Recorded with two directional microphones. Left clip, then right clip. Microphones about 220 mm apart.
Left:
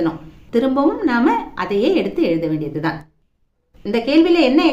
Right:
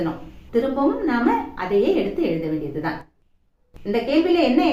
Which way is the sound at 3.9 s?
50° left (ahead or behind).